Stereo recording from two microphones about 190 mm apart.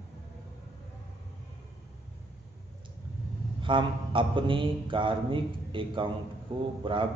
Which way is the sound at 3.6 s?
25° right (ahead or behind).